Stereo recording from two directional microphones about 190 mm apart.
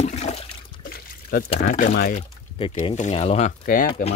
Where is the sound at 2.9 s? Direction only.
35° left (ahead or behind).